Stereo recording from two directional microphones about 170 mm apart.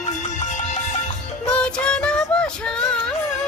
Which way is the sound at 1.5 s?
5° left (ahead or behind).